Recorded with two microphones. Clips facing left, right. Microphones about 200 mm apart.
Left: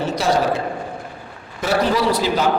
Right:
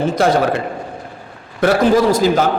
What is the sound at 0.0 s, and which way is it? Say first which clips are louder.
Speech: right 4 dB; 50° right (ahead or behind).